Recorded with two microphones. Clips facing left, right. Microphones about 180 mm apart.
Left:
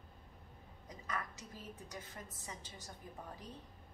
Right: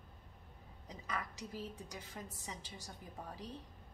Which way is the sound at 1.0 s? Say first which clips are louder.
Right 1 dB; 15° right (ahead or behind).